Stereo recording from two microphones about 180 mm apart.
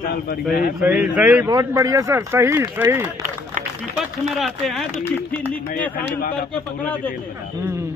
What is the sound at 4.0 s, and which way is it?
Speech, centre (ahead or behind).